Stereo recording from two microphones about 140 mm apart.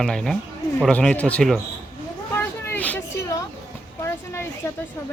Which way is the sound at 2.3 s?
15° left (ahead or behind).